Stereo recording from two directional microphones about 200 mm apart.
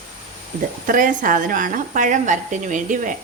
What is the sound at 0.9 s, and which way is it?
A woman's voice, 40° right (ahead or behind).